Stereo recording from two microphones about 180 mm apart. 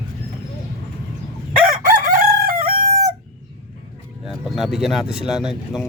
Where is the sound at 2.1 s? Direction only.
55° right (ahead or behind).